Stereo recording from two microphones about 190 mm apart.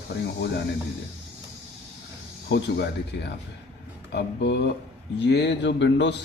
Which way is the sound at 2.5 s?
60° left (ahead or behind).